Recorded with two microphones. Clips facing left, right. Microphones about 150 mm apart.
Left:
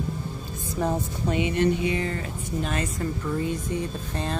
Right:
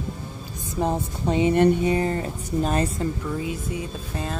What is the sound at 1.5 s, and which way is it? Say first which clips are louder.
Speech: right 6 dB; 50° right (ahead or behind).